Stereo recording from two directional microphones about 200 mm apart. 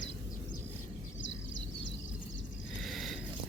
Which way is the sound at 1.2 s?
70° left (ahead or behind).